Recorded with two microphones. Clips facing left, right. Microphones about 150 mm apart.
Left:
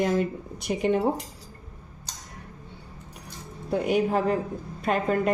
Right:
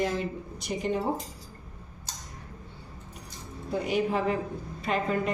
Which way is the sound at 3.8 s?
45° left (ahead or behind).